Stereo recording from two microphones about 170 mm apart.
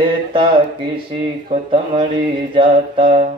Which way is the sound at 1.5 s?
35° right (ahead or behind).